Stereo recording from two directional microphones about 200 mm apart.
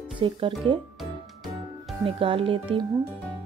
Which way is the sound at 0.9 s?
Centre (ahead or behind).